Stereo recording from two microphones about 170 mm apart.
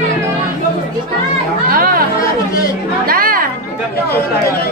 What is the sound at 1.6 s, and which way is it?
Speech, 60° right (ahead or behind).